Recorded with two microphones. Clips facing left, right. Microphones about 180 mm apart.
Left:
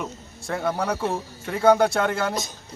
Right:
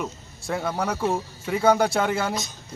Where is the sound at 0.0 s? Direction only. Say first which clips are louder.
Right 1 dB; 5° right (ahead or behind).